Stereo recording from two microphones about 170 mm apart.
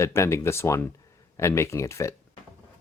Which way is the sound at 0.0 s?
15° left (ahead or behind).